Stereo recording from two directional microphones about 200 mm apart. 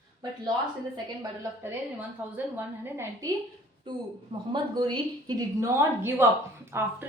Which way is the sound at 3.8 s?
25° right (ahead or behind).